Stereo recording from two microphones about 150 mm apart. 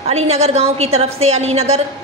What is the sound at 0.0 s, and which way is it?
A woman's voice, 45° right (ahead or behind).